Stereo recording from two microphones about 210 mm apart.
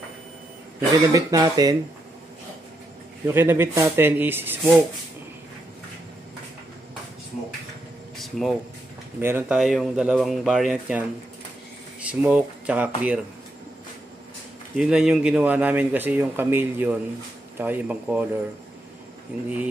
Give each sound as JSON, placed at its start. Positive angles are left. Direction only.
{"t": 0.7, "sound": "speech", "side_deg": -15}
{"t": 3.3, "sound": "speech", "side_deg": -10}
{"t": 8.2, "sound": "speech", "side_deg": 0}
{"t": 14.8, "sound": "speech", "side_deg": -5}